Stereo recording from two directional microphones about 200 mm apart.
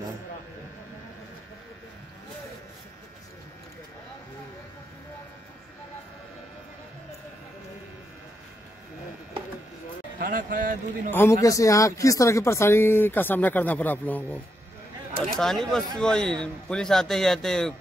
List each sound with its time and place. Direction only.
10.1 s a man's voice: 45° right (ahead or behind)
11.1 s a man's voice: 10° left (ahead or behind)